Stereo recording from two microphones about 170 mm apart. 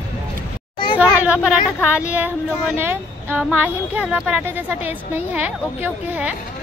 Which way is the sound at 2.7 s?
10° right (ahead or behind).